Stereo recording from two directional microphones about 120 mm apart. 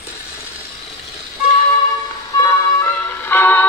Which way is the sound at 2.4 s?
20° left (ahead or behind).